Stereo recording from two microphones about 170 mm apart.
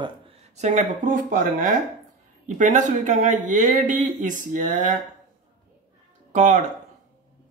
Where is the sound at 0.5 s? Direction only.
45° right (ahead or behind).